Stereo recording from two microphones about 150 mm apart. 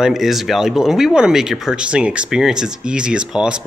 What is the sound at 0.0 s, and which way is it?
Speech, centre (ahead or behind).